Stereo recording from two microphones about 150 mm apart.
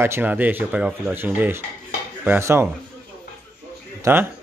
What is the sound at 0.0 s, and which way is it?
A man's voice, 15° right (ahead or behind).